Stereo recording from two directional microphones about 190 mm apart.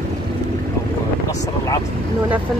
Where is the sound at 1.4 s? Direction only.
20° left (ahead or behind).